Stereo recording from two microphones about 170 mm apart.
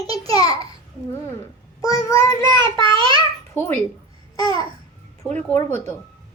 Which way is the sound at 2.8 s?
30° right (ahead or behind).